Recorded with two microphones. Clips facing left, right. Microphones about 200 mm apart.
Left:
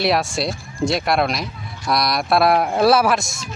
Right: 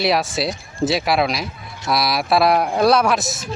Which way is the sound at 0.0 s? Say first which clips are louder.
Even; centre (ahead or behind).